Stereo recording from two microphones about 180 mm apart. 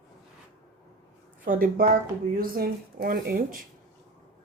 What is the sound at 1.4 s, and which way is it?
Speech, 50° right (ahead or behind).